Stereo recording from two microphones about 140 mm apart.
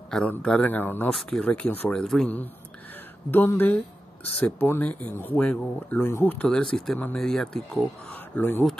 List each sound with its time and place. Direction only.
0.1 s speech: 10° left (ahead or behind)